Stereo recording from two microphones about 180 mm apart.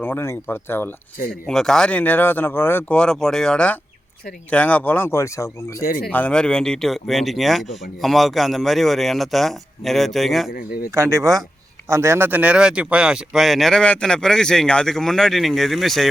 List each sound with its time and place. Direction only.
0.0 s speech: 10° left (ahead or behind)
5.8 s speech: 55° left (ahead or behind)
6.1 s speech: 10° left (ahead or behind)
10.5 s speech: 55° left (ahead or behind)
10.9 s speech: 15° right (ahead or behind); by 16.0 s centre (ahead or behind)